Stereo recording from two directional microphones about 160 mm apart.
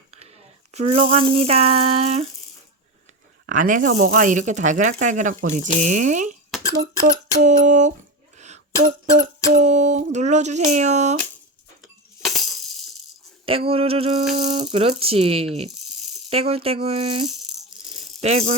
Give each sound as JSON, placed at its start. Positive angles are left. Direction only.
{"t": 0.7, "sound": "speech", "side_deg": -40}
{"t": 3.4, "sound": "speech", "side_deg": -55}
{"t": 6.5, "sound": "throat clearing", "side_deg": 0}
{"t": 7.3, "sound": "speech", "side_deg": -50}
{"t": 8.4, "sound": "a sound", "side_deg": -45}
{"t": 9.5, "sound": "speech", "side_deg": -45}
{"t": 11.8, "sound": "coin", "side_deg": 0}
{"t": 13.4, "sound": "speech", "side_deg": -35}